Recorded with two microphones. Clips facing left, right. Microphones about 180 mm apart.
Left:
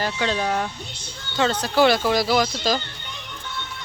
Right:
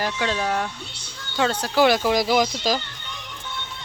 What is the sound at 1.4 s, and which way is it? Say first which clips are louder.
Speech: left 1 dB; 10° right (ahead or behind).